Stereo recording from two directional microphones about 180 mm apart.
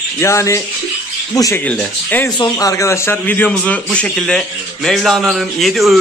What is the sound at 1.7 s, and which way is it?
Speech, 5° left (ahead or behind).